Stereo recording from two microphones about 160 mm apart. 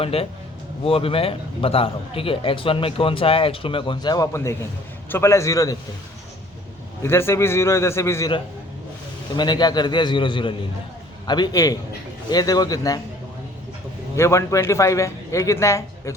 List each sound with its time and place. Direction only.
0.0 s a man's voice: 35° left (ahead or behind); by 5.7 s 20° left (ahead or behind)
7.0 s a man's voice: 15° left (ahead or behind)
9.3 s a man's voice: 25° left (ahead or behind)
14.2 s a man's voice: 20° left (ahead or behind)